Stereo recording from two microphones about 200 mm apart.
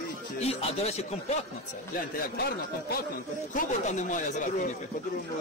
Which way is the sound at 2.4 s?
50° left (ahead or behind).